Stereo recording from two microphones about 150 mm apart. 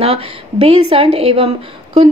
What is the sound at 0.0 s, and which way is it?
A woman's voice, 40° right (ahead or behind).